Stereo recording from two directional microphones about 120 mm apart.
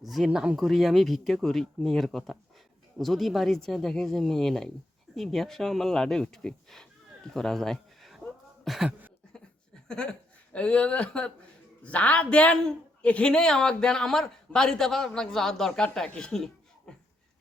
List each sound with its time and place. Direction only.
0.0 s a man's voice: centre (ahead or behind)
9.9 s a man's voice: 5° left (ahead or behind)